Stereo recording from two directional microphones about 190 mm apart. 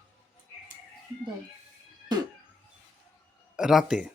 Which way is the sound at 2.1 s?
20° right (ahead or behind).